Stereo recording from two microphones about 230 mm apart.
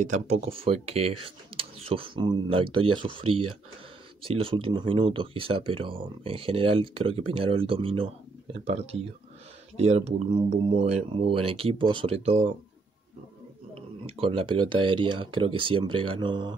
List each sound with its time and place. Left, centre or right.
0.0 s speech: right
3.3 s speech: right
4.2 s speech: right
13.7 s speech: right